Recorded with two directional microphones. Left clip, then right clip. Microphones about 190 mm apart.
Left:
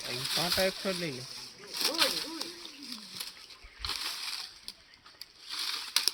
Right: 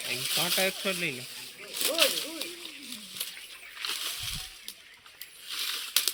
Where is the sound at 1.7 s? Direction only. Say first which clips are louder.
Right 1 dB; 10° left (ahead or behind).